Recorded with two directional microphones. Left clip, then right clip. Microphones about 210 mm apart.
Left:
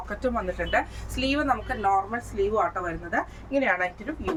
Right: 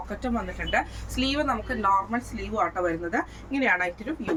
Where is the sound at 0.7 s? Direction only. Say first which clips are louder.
Right 3 dB; 20° left (ahead or behind).